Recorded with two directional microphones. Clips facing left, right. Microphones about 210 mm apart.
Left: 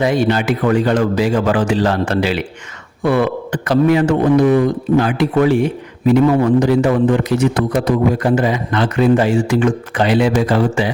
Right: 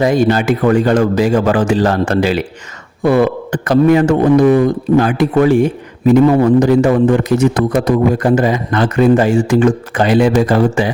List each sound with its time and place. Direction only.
0.0 s a man's voice: 45° right (ahead or behind)